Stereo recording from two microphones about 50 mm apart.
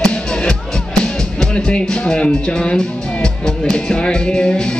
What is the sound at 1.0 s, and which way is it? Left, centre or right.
Music, centre.